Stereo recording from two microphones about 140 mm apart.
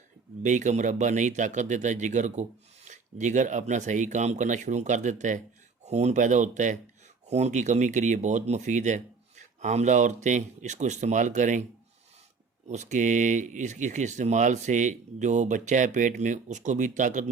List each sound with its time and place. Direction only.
0.4 s speech: 60° right (ahead or behind)
12.6 s speech: 55° right (ahead or behind)